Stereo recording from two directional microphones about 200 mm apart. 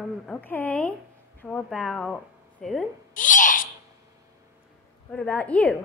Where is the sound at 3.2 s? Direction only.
40° left (ahead or behind).